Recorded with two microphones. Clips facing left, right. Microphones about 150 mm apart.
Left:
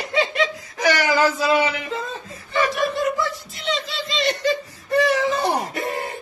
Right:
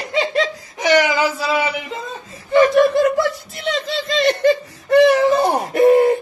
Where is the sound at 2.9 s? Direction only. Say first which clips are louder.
Right 7 dB; 80° right.